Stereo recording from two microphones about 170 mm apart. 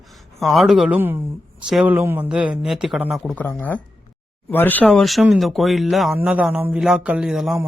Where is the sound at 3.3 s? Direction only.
10° left (ahead or behind).